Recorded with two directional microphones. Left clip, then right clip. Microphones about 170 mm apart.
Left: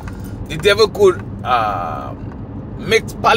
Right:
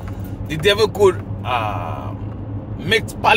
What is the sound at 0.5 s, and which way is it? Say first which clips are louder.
Speech: left 3 dB; 20° right (ahead or behind).